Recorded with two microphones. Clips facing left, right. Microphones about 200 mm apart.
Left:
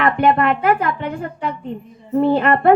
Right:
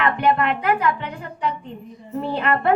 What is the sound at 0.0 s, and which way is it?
A woman's voice, 40° left (ahead or behind).